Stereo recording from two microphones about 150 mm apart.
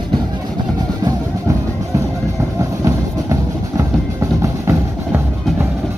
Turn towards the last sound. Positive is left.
turn(degrees=-20)  # may be behind; listen again after turning